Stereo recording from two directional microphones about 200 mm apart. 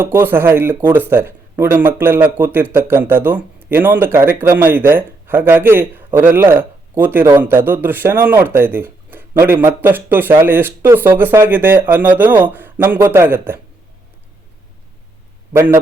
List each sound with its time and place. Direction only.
0.0 s speech: 10° right (ahead or behind)
15.5 s speech: 10° right (ahead or behind)